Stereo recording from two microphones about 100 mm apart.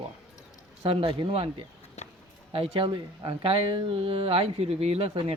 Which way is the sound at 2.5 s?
65° right (ahead or behind).